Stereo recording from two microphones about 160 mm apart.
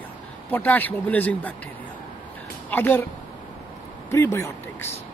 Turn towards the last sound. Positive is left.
turn(degrees=15)  # may be behind; listen again after turning